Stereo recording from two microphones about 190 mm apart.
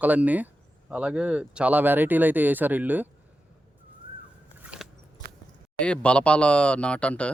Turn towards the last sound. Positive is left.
turn(degrees=5)  # may be behind; listen again after turning